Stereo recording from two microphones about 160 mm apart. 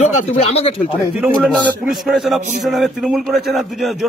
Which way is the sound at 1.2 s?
5° right (ahead or behind).